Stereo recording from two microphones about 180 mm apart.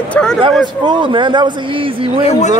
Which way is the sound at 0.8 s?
25° right (ahead or behind).